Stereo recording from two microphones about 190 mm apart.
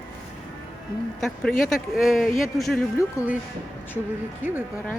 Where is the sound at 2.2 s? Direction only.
45° left (ahead or behind).